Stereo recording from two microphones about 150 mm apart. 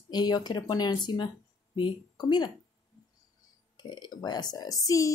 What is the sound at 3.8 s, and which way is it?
Speech, 30° left (ahead or behind).